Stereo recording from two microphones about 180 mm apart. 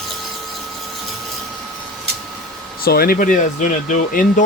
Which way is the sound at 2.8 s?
55° left (ahead or behind).